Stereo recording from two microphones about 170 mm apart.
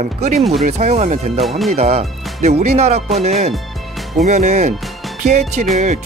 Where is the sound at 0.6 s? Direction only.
40° right (ahead or behind).